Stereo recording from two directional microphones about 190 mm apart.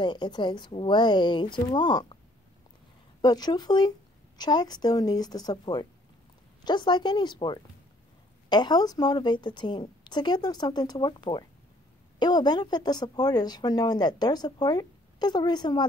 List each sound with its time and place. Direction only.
0.0 s a woman's voice: 25° left (ahead or behind)
3.2 s a woman's voice: 20° left (ahead or behind)